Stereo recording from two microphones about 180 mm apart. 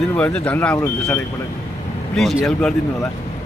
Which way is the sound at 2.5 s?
5° left (ahead or behind).